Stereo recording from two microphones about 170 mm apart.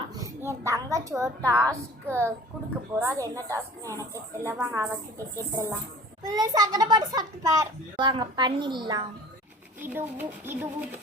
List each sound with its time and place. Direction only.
0.0 s a child's voice: 20° right (ahead or behind)
9.8 s a woman's voice: 10° right (ahead or behind)